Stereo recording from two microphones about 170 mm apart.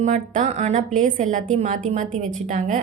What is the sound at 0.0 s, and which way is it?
A woman's voice, 45° right (ahead or behind).